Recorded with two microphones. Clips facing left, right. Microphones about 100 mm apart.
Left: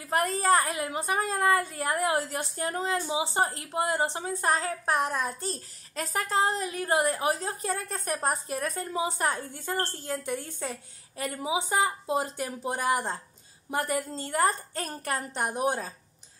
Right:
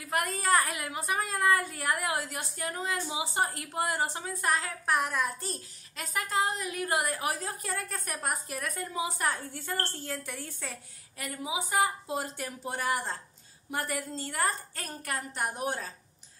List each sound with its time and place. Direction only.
0.0 s a woman's voice: 30° left (ahead or behind)